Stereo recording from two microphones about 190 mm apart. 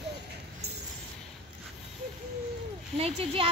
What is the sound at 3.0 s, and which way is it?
Speech, 30° right (ahead or behind).